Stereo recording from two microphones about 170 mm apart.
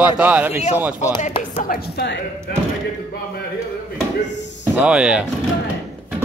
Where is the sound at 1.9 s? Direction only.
90° left.